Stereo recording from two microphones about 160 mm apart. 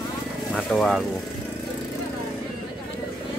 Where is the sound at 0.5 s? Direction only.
Centre (ahead or behind).